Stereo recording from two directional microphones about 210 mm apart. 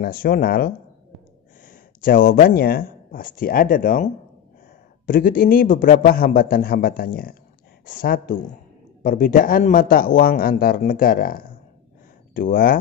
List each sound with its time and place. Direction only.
0.0 s a man's voice: 45° left (ahead or behind)